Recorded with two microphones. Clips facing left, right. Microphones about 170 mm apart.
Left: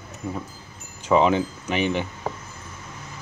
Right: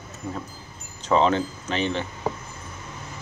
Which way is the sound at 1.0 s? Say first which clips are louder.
Left 2 dB; 10° left (ahead or behind).